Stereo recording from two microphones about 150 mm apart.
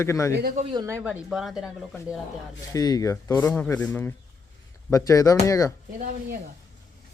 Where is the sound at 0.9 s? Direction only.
10° right (ahead or behind).